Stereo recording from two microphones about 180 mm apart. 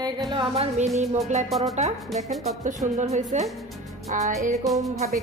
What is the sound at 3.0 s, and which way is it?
Music, 40° right (ahead or behind).